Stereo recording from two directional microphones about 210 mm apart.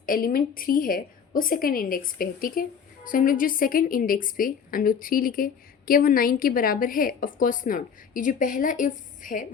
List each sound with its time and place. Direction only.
0.0 s a woman's voice: 40° left (ahead or behind)